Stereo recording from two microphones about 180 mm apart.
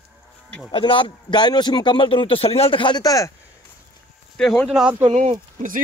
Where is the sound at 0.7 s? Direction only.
30° left (ahead or behind).